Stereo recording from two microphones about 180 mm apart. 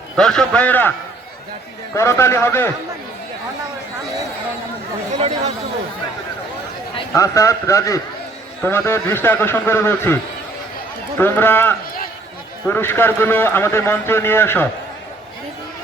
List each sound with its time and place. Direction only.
0.2 s a man's voice: 5° left (ahead or behind)
2.0 s a man's voice: 15° left (ahead or behind)
7.1 s a man's voice: 15° left (ahead or behind)
11.2 s a man's voice: 10° left (ahead or behind)